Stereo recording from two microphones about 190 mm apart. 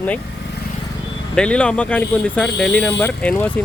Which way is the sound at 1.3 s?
5° left (ahead or behind).